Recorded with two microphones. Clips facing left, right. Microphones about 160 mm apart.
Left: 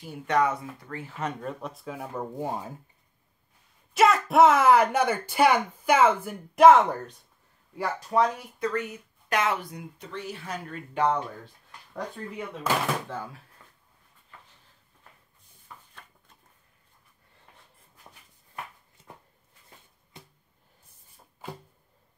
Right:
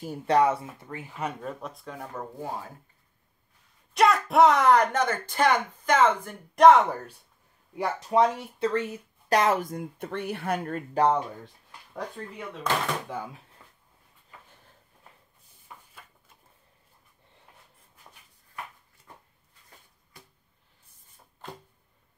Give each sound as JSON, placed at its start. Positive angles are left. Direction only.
{"t": 0.0, "sound": "speech", "side_deg": -35}
{"t": 2.3, "sound": "speech", "side_deg": 20}
{"t": 3.9, "sound": "speech", "side_deg": 0}
{"t": 7.7, "sound": "speech", "side_deg": -20}
{"t": 11.9, "sound": "speech", "side_deg": 5}
{"t": 13.1, "sound": "speech", "side_deg": -15}
{"t": 13.6, "sound": "dog", "side_deg": -10}
{"t": 15.9, "sound": "a sound", "side_deg": -5}
{"t": 20.1, "sound": "a sound", "side_deg": 25}
{"t": 21.4, "sound": "a sound", "side_deg": 5}